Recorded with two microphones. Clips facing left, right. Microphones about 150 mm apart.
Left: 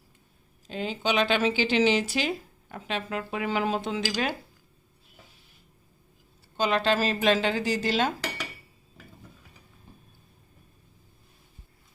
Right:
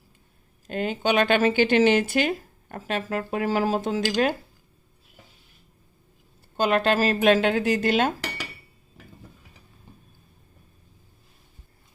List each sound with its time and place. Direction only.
0.7 s speech: 55° right (ahead or behind)
6.6 s a woman's voice: 55° right (ahead or behind)